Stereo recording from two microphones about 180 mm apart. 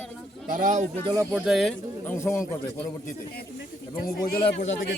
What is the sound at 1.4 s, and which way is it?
Speech, centre (ahead or behind).